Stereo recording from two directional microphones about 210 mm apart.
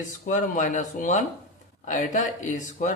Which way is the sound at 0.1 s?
35° left (ahead or behind).